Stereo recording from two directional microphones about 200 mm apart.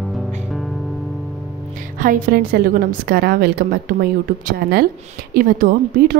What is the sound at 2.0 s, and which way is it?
A woman's voice, 45° right (ahead or behind).